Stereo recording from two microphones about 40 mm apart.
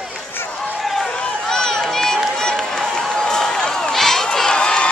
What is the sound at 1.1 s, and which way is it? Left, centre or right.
Run, centre.